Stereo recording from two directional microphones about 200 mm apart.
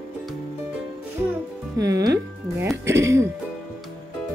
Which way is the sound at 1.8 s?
15° right (ahead or behind).